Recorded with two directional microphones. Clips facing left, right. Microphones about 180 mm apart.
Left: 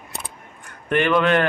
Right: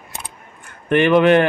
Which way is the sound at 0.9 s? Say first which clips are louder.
Right 5 dB; 20° right (ahead or behind).